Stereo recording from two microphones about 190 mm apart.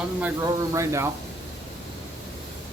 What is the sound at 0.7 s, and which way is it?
Speech, 15° right (ahead or behind).